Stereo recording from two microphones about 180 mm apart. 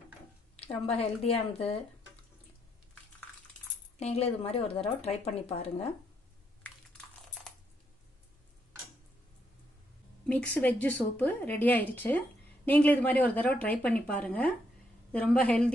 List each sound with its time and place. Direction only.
0.9 s speech: 35° left (ahead or behind)
4.0 s speech: 35° left (ahead or behind)
10.2 s a woman's voice: 10° left (ahead or behind)